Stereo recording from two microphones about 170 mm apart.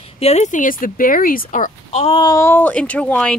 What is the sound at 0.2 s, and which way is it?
Speech, 40° left (ahead or behind).